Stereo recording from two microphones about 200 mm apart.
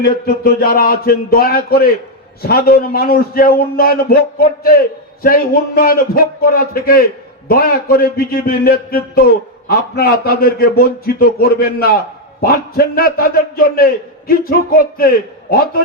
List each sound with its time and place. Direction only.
0.0 s a man's voice: 50° left (ahead or behind)